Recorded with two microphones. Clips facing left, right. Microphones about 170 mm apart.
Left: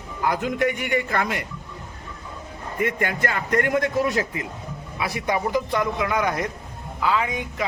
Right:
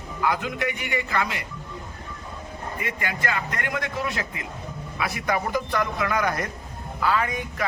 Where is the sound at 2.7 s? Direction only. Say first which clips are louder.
Left 8 dB; 50° left (ahead or behind).